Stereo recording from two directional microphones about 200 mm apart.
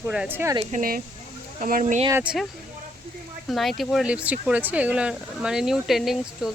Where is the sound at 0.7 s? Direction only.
45° right (ahead or behind).